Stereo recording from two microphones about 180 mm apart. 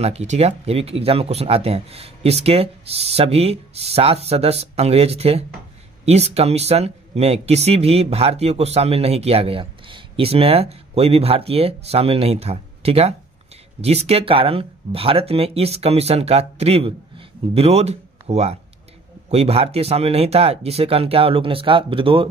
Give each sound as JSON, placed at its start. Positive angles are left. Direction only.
{"t": 0.0, "sound": "speech", "side_deg": -35}